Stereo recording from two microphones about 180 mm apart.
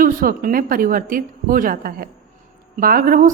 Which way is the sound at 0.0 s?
50° right (ahead or behind).